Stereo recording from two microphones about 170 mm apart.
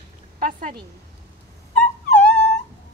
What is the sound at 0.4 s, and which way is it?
Speech, 50° right (ahead or behind).